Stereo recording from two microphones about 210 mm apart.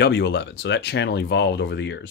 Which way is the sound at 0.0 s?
55° left (ahead or behind).